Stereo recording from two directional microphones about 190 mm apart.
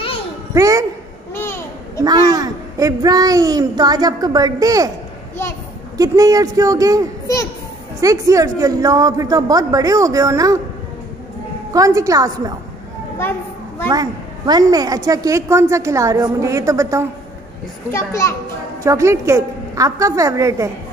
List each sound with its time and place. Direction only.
0.6 s a woman's voice: 20° right (ahead or behind)
1.3 s babbling: 10° left (ahead or behind)
2.0 s speech: 20° right (ahead or behind)
5.9 s a woman's voice: 20° right (ahead or behind)
11.7 s a woman's voice: 15° right (ahead or behind)
13.8 s a woman's voice: 20° right (ahead or behind)
17.9 s a child's voice: 15° left (ahead or behind)
18.8 s a woman's voice: 15° right (ahead or behind)